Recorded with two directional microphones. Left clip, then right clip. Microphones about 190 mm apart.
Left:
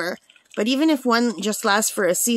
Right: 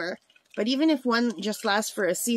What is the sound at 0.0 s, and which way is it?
Speech, 25° left (ahead or behind).